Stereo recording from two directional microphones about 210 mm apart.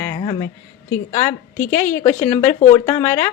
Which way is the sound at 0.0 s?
20° left (ahead or behind).